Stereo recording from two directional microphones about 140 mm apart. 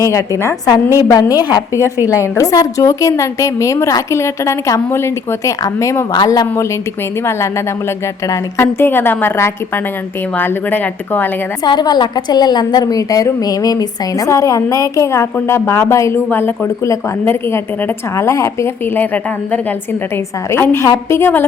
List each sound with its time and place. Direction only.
0.0 s a woman's voice: 20° left (ahead or behind)
8.3 s a woman's voice: 15° left (ahead or behind)
11.6 s a woman's voice: 30° left (ahead or behind)